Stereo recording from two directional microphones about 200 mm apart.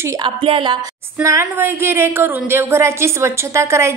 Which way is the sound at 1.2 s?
15° right (ahead or behind).